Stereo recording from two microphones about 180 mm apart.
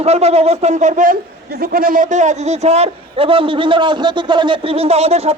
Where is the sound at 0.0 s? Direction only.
35° right (ahead or behind).